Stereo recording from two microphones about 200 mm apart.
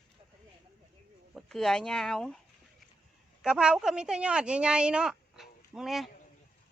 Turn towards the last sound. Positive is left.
turn(degrees=0)  # may be behind; listen again after turning